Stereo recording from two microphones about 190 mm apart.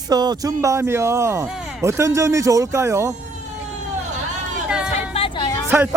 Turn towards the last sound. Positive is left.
turn(degrees=25)  # may be behind; listen again after turning